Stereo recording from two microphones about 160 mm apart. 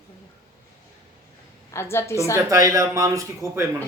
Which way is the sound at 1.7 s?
15° left (ahead or behind).